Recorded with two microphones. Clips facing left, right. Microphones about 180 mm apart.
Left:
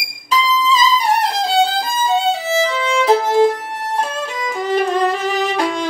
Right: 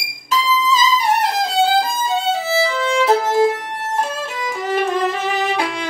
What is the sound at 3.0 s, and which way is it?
Violin, 5° right (ahead or behind).